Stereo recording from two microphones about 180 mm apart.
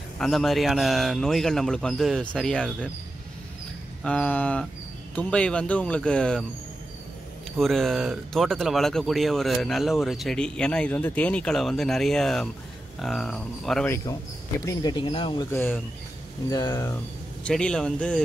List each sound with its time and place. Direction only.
0.2 s speech: centre (ahead or behind)
4.0 s speech: 5° left (ahead or behind)
7.5 s speech: centre (ahead or behind)
14.6 s speech: 20° left (ahead or behind)
15.5 s speech: 10° left (ahead or behind)
17.4 s speech: 5° left (ahead or behind)